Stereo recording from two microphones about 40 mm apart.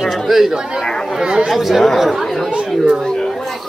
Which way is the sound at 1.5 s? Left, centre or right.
Centre.